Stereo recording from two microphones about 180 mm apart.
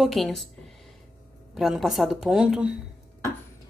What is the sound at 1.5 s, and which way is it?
Speech, centre (ahead or behind).